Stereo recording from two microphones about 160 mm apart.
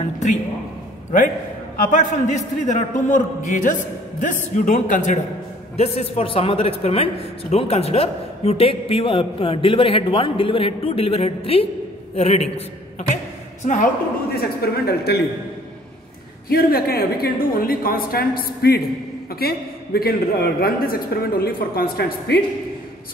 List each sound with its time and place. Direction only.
1.1 s a man's voice: 55° left (ahead or behind)
5.8 s a man's voice: 40° left (ahead or behind)
13.1 s a sound: 50° left (ahead or behind)
14.3 s speech: 75° left (ahead or behind)
16.4 s a man's voice: 70° left (ahead or behind)